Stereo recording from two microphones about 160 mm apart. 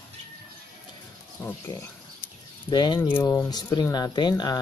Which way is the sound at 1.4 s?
15° left (ahead or behind).